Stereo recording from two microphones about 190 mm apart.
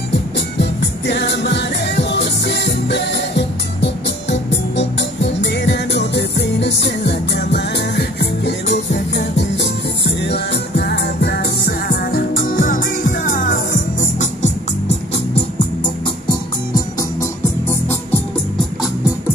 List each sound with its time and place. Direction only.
0.1 s music: 65° left (ahead or behind); by 15.0 s 35° left (ahead or behind)
16.3 s music: 20° left (ahead or behind)